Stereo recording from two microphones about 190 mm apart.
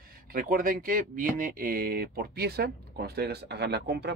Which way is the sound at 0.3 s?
50° right (ahead or behind).